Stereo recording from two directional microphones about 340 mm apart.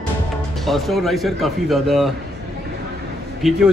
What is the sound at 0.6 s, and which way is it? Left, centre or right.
A man's voice, centre.